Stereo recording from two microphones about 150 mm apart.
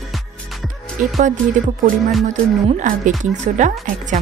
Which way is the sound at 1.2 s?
55° right (ahead or behind).